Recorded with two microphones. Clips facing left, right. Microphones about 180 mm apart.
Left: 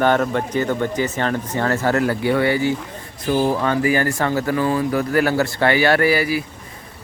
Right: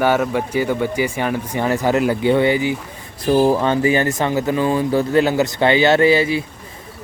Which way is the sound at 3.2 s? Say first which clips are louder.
Right 4 dB; 30° right (ahead or behind).